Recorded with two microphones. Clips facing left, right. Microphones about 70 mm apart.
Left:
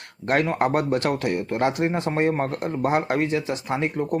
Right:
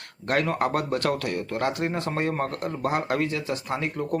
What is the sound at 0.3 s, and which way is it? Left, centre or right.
Speech, left.